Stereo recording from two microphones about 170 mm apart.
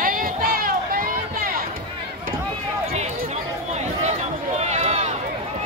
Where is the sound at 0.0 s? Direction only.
55° right (ahead or behind).